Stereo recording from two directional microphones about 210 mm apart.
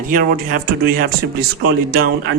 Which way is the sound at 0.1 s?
40° right (ahead or behind).